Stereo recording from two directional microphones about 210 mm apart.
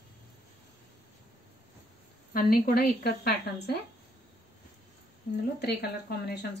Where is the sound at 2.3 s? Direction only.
45° left (ahead or behind).